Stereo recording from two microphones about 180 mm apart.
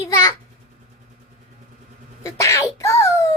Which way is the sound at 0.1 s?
15° left (ahead or behind).